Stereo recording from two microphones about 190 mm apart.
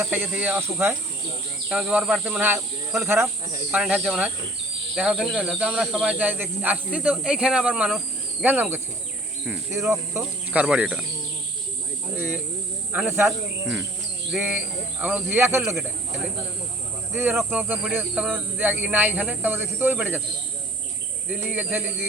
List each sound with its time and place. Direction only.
0.0 s speech: 10° right (ahead or behind)
12.9 s speech: 10° right (ahead or behind)
14.3 s speech: 10° right (ahead or behind)
17.2 s speech: 10° right (ahead or behind)
21.2 s speech: 10° right (ahead or behind)